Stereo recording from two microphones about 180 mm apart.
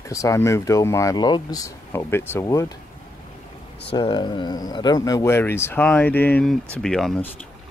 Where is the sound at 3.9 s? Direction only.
25° left (ahead or behind); by 7.3 s 5° left (ahead or behind).